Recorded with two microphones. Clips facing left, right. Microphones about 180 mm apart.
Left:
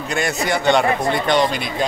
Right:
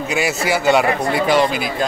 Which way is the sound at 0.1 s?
5° right (ahead or behind).